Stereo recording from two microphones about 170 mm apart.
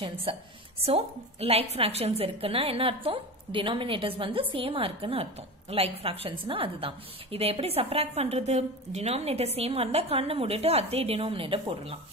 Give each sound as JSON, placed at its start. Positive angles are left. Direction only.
{"t": 0.0, "sound": "a woman's voice", "side_deg": -35}